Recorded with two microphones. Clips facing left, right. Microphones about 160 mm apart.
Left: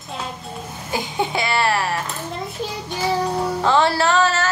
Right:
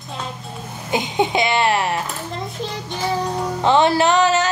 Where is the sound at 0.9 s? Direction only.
20° right (ahead or behind).